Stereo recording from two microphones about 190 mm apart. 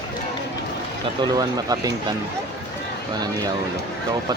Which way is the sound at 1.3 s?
20° right (ahead or behind).